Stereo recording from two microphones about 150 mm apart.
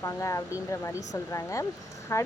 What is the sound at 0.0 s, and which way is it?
Speech, 20° left (ahead or behind).